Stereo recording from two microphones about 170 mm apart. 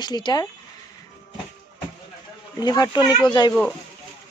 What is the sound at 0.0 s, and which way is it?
Speech, 25° left (ahead or behind).